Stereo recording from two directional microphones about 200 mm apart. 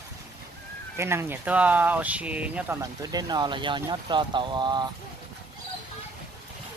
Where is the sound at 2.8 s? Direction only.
20° right (ahead or behind).